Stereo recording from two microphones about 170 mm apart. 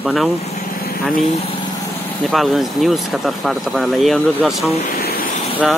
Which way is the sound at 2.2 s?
Centre (ahead or behind).